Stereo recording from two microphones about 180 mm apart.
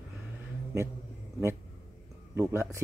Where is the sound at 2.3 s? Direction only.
15° right (ahead or behind).